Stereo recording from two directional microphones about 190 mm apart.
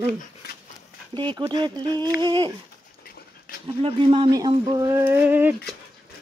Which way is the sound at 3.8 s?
30° right (ahead or behind).